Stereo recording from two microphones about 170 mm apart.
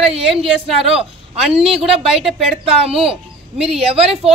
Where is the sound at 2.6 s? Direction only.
35° right (ahead or behind).